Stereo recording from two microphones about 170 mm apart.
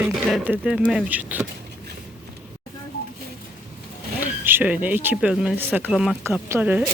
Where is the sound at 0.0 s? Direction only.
5° right (ahead or behind).